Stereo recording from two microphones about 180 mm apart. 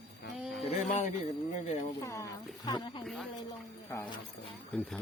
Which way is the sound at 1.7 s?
35° left (ahead or behind).